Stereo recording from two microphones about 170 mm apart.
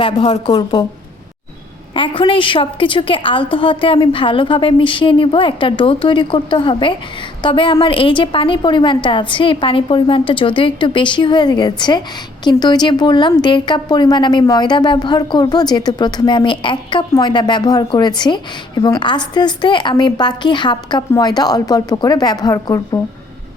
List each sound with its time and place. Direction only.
0.0 s a woman's voice: 35° left (ahead or behind)
1.9 s a woman's voice: 30° left (ahead or behind)